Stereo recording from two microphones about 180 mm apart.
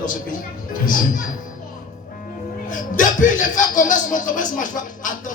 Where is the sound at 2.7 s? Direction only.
45° left (ahead or behind).